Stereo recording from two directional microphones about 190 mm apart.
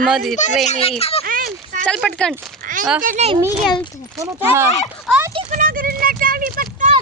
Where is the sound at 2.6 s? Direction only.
45° right (ahead or behind).